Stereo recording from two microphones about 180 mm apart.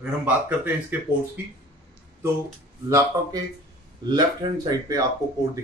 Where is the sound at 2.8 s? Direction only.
15° right (ahead or behind).